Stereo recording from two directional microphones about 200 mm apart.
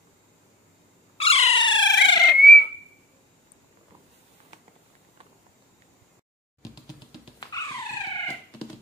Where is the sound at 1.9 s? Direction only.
60° left (ahead or behind).